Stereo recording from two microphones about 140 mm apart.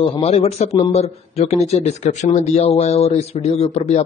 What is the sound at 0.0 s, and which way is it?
Speech, 45° left (ahead or behind).